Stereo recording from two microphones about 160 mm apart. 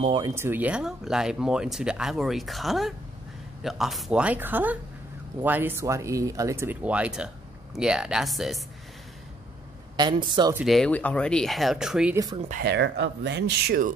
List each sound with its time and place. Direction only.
0.2 s speech: 15° right (ahead or behind); by 8.6 s centre (ahead or behind)
9.9 s speech: 30° right (ahead or behind)
10.5 s speech: centre (ahead or behind)
12.4 s speech: 50° right (ahead or behind)
12.6 s speech: 90° right; by 13.9 s 70° right (ahead or behind)